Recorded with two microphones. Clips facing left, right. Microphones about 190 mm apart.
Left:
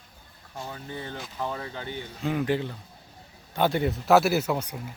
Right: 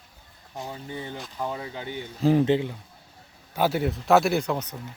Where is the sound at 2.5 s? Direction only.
15° right (ahead or behind).